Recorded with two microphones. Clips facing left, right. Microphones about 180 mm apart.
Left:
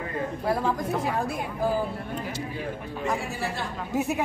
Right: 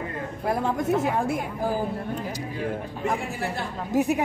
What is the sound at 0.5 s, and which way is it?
Speech, 25° right (ahead or behind).